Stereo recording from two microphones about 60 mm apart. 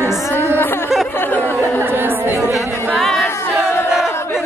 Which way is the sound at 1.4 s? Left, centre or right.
Right.